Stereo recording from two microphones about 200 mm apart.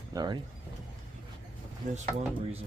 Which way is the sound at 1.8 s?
40° right (ahead or behind).